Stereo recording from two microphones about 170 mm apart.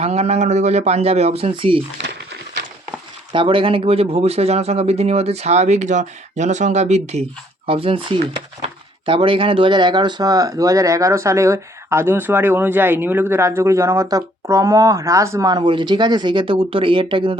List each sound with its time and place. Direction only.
0.0 s speech: 40° right (ahead or behind)
3.3 s speech: 30° right (ahead or behind)